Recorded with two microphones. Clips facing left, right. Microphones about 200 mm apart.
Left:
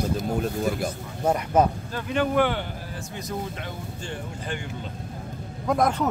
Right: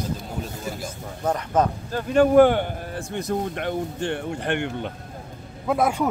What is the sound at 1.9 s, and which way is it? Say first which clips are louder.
Speech: right 7 dB; 45° right (ahead or behind).